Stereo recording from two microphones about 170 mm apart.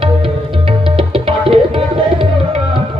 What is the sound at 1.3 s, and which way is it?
Tabla, 30° right (ahead or behind).